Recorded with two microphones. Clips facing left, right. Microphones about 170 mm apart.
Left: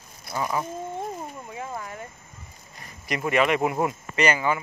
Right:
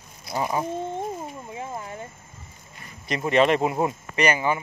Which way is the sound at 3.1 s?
25° right (ahead or behind).